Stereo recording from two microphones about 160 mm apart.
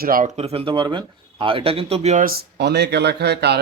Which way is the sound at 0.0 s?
60° right (ahead or behind).